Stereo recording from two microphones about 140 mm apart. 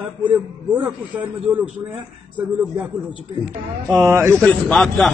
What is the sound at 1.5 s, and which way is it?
Speech, 15° right (ahead or behind).